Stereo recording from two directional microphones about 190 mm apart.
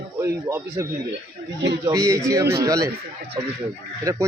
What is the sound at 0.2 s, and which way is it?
Speech, 15° right (ahead or behind).